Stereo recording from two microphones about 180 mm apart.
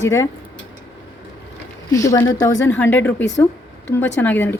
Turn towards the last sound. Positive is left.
turn(degrees=10)  # may be behind; listen again after turning